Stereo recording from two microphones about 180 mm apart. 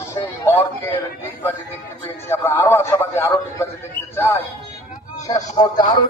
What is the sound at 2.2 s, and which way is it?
A man's voice, 15° left (ahead or behind).